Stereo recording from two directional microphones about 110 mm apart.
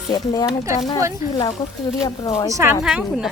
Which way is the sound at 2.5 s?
20° right (ahead or behind).